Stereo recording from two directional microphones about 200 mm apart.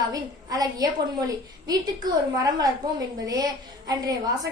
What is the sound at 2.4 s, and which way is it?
A woman's voice, 20° right (ahead or behind).